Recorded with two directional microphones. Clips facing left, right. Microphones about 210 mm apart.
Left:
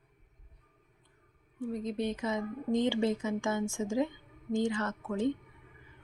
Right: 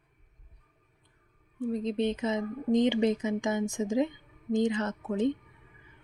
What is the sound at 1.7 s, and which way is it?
Speech, 25° right (ahead or behind).